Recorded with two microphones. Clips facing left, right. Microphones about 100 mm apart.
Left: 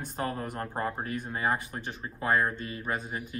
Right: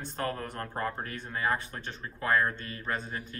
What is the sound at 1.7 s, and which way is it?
Speech, 10° left (ahead or behind).